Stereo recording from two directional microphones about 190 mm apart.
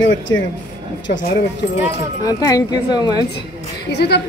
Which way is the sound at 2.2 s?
20° left (ahead or behind).